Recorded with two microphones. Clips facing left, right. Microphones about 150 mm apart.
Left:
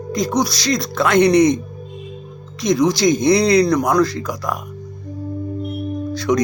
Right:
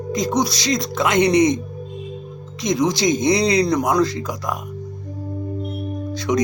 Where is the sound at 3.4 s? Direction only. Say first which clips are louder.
Left 4 dB; 65° left (ahead or behind).